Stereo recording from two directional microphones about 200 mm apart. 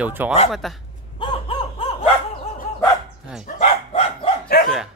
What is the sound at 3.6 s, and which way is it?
Dog, 30° left (ahead or behind).